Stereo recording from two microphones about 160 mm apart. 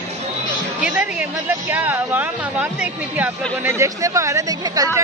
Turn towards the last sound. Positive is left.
turn(degrees=-25)  # may be behind; listen again after turning